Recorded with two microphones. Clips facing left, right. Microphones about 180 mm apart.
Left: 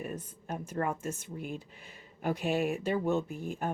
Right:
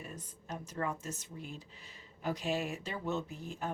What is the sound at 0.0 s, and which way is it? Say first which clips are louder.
Speech: left 8 dB; 55° left (ahead or behind).